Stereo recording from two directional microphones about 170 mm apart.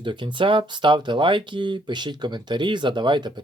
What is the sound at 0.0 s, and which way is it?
Speech, 30° right (ahead or behind).